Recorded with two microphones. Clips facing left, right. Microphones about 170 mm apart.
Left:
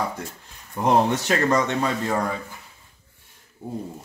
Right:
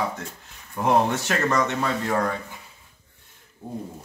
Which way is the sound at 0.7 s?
15° left (ahead or behind).